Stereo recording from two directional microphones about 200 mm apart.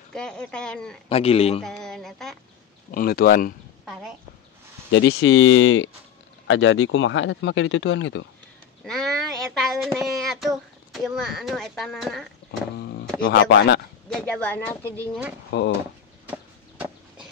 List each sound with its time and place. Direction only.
0.1 s speech: 5° left (ahead or behind)
1.0 s speech: 30° left (ahead or behind)
1.6 s speech: centre (ahead or behind)
2.9 s speech: 45° left (ahead or behind)
4.9 s speech: 65° left (ahead or behind)
8.8 s speech: centre (ahead or behind)
12.4 s a sound: 55° left (ahead or behind)
13.2 s speech: 65° left (ahead or behind)
14.1 s speech: 5° left (ahead or behind)
15.0 s speech: 10° right (ahead or behind)
16.3 s chicken: 10° right (ahead or behind)